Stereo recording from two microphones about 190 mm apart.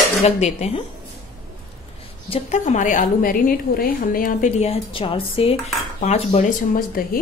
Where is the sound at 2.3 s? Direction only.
35° left (ahead or behind).